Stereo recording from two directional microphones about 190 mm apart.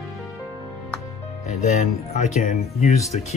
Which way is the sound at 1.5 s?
35° left (ahead or behind).